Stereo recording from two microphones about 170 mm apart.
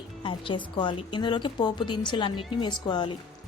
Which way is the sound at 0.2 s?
30° left (ahead or behind).